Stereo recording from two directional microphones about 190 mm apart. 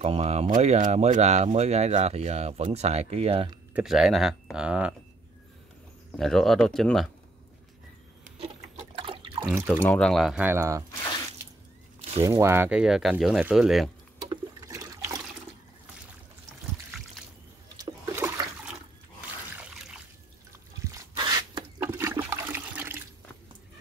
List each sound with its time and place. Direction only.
0.0 s speech: 35° right (ahead or behind)
3.7 s speech: centre (ahead or behind)
6.1 s speech: centre (ahead or behind)
8.4 s liquid: 30° right (ahead or behind)
9.8 s speech: 5° left (ahead or behind); by 10.8 s 15° right (ahead or behind)
12.2 s speech: 15° right (ahead or behind)
14.3 s toilet flush: 15° right (ahead or behind)
17.7 s toilet flush: 15° right (ahead or behind)
19.5 s trickle: 5° right (ahead or behind)
20.9 s toilet flush: 20° right (ahead or behind)